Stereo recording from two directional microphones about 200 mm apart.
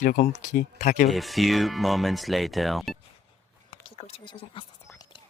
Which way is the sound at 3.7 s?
30° left (ahead or behind).